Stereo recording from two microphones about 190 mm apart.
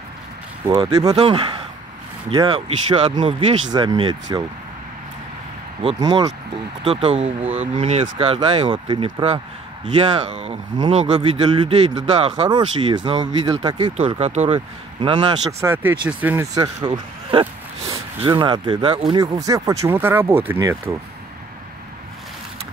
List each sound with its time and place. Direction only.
0.7 s speech: 20° right (ahead or behind)
5.9 s speech: 20° right (ahead or behind)
12.4 s speech: 25° right (ahead or behind)
15.6 s speech: 10° right (ahead or behind)
16.5 s speech: 20° right (ahead or behind)